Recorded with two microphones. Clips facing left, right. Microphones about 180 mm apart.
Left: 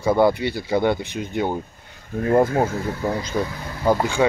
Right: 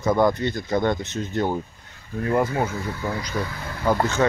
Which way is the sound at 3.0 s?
25° left (ahead or behind).